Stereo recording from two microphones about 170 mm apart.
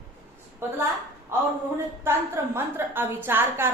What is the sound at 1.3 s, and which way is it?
A woman's voice, 15° right (ahead or behind).